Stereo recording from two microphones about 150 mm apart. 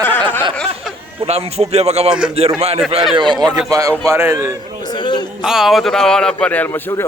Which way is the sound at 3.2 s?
30° right (ahead or behind).